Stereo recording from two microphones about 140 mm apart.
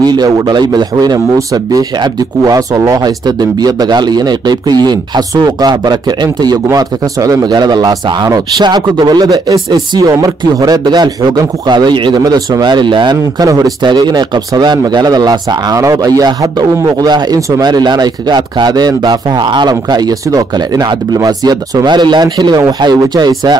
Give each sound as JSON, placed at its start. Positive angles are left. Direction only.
{"t": 0.0, "sound": "speech", "side_deg": -30}